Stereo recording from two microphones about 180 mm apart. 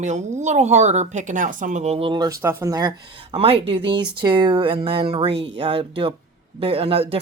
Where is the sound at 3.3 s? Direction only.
35° right (ahead or behind).